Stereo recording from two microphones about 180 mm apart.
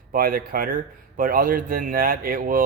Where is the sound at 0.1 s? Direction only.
55° right (ahead or behind).